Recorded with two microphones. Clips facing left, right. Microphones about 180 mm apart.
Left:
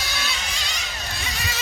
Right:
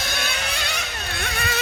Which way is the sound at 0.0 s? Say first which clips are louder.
Right 3 dB; 50° right (ahead or behind).